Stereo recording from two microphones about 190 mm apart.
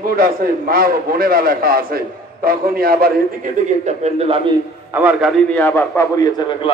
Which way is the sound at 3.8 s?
35° right (ahead or behind).